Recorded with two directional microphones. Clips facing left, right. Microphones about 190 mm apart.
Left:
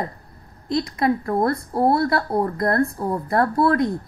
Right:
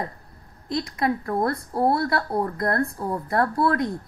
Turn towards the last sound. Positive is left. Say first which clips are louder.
# left 3 dB
turn(degrees=30)  # may be behind; listen again after turning